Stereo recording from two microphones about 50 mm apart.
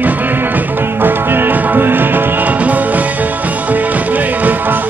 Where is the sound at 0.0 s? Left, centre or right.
Right.